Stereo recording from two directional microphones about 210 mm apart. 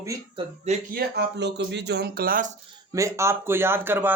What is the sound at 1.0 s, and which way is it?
Speech, 55° right (ahead or behind).